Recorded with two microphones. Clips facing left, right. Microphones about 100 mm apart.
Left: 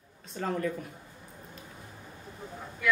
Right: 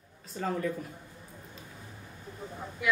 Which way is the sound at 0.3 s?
Centre (ahead or behind).